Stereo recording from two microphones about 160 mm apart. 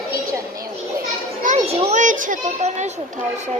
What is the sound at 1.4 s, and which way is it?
A child's voice, 45° right (ahead or behind).